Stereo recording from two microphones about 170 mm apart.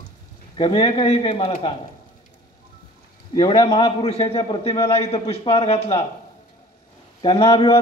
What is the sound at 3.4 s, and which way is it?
A man's voice, 25° left (ahead or behind).